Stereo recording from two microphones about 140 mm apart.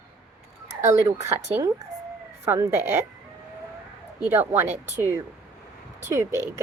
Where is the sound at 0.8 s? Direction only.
20° right (ahead or behind).